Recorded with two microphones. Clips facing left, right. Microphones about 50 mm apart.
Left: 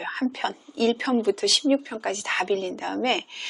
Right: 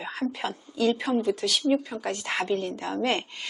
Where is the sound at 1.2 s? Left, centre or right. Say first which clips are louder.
Left 3 dB; left.